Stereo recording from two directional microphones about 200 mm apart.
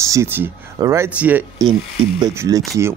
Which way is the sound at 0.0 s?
15° right (ahead or behind).